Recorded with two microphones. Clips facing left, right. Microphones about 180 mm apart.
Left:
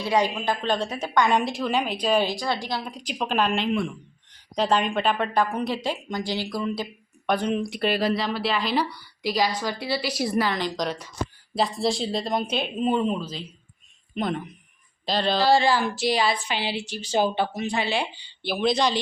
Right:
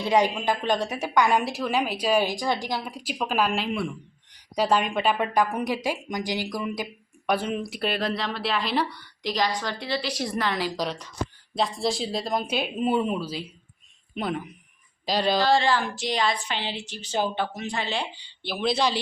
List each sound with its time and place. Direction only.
0.0 s a woman's voice: 20° right (ahead or behind); by 10.6 s 5° left (ahead or behind)
10.6 s a woman's voice: 5° right (ahead or behind)
15.4 s a woman's voice: 10° left (ahead or behind)